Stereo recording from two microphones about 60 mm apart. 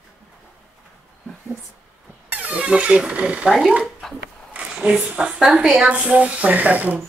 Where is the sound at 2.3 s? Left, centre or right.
Right.